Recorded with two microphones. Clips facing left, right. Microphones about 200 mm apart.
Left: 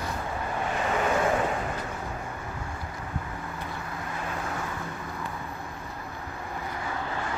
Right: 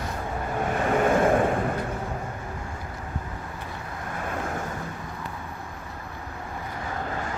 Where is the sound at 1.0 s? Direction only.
50° right (ahead or behind).